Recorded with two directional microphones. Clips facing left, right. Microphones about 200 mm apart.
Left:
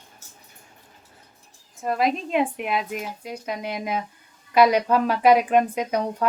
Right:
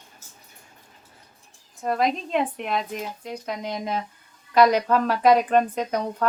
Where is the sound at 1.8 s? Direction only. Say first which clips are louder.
Even; 5° left (ahead or behind).